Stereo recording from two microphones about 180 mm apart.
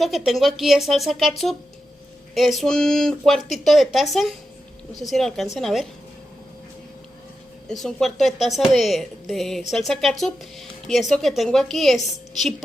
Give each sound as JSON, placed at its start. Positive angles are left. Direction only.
{"t": 0.0, "sound": "a woman's voice", "side_deg": 0}
{"t": 7.7, "sound": "a woman's voice", "side_deg": 5}